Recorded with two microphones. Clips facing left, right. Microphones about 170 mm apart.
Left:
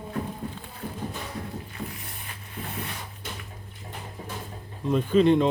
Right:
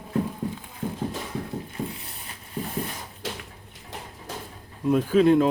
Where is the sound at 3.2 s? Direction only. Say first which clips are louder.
Right 7 dB; 90° right.